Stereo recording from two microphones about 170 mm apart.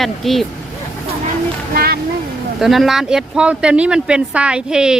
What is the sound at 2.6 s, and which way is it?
Speech, centre (ahead or behind).